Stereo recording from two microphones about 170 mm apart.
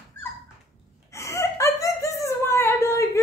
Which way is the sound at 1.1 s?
15° left (ahead or behind).